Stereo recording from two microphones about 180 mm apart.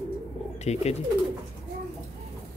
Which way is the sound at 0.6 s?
35° left (ahead or behind).